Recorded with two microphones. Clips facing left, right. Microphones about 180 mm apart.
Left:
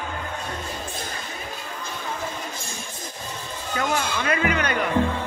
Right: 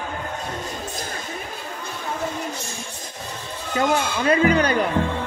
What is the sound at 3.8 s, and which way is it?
Speech, 30° right (ahead or behind).